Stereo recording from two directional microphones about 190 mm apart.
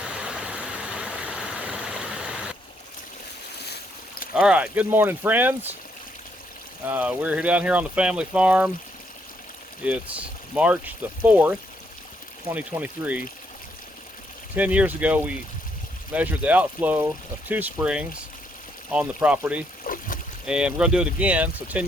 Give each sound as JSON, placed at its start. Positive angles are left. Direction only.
{"t": 0.0, "sound": "vehicle", "side_deg": -5}
{"t": 4.4, "sound": "speech", "side_deg": -5}
{"t": 6.8, "sound": "speech", "side_deg": -10}
{"t": 9.8, "sound": "speech", "side_deg": -5}
{"t": 14.5, "sound": "speech", "side_deg": -10}
{"t": 19.8, "sound": "boat", "side_deg": 45}
{"t": 20.4, "sound": "speech", "side_deg": -5}